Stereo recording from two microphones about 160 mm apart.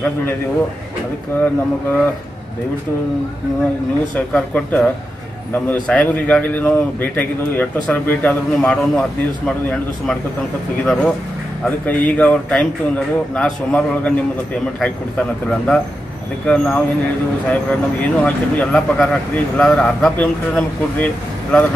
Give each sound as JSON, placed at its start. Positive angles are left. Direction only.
{"t": 1.4, "sound": "speech", "side_deg": 10}
{"t": 4.3, "sound": "speech", "side_deg": 10}
{"t": 11.6, "sound": "speech", "side_deg": 10}